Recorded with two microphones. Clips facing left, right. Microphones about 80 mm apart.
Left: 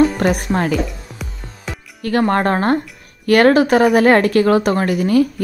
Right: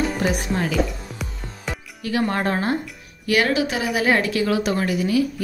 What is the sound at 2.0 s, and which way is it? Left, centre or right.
Speech, left.